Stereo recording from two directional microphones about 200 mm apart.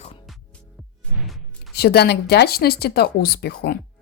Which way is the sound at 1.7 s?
50° left (ahead or behind).